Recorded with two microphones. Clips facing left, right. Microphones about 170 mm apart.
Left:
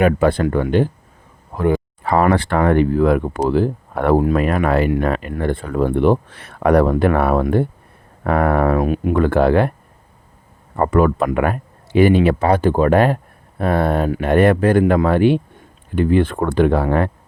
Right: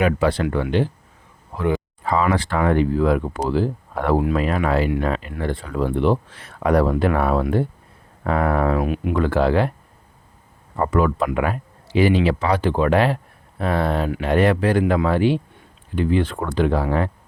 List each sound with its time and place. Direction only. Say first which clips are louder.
0.0 s speech: left 4 dB; 50° left (ahead or behind)
10.8 s speech: left 4 dB; 50° left (ahead or behind)